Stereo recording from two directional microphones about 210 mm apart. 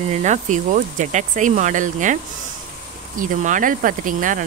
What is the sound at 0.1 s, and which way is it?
Speech, 35° right (ahead or behind).